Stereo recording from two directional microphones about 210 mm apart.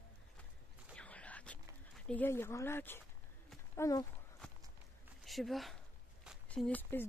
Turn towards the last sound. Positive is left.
turn(degrees=5)  # may be behind; listen again after turning